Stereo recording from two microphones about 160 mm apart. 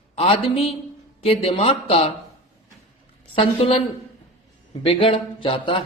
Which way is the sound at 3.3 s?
35° left (ahead or behind).